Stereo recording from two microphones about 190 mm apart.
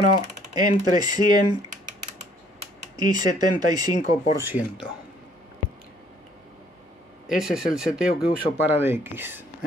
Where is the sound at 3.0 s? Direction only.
20° right (ahead or behind).